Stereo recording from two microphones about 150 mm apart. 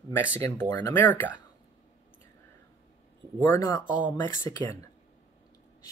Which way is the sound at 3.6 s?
25° left (ahead or behind).